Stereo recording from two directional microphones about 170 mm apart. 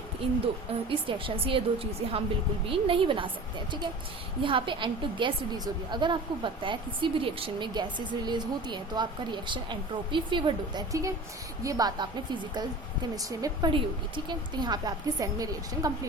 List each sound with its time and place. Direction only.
0.4 s a woman's voice: 30° right (ahead or behind)
4.4 s a woman's voice: 30° right (ahead or behind)